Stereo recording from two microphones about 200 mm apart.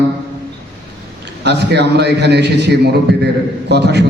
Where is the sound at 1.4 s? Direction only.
60° right (ahead or behind).